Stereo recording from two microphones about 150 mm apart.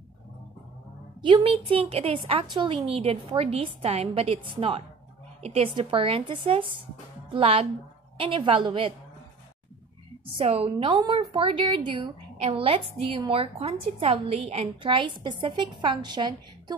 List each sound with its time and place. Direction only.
1.2 s a woman's voice: 35° right (ahead or behind)
10.3 s a woman's voice: 40° right (ahead or behind)